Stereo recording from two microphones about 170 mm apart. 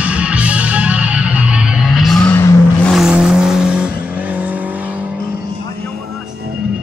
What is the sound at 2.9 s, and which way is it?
Vehicle, 5° right (ahead or behind).